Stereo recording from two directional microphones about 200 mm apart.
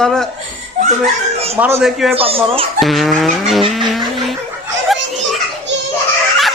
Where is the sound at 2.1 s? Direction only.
30° right (ahead or behind).